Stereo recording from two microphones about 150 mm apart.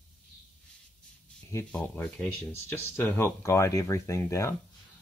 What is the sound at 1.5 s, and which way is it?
Speech, 10° left (ahead or behind).